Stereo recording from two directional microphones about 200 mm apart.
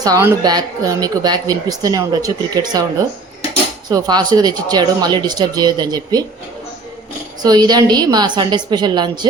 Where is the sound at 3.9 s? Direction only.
20° right (ahead or behind).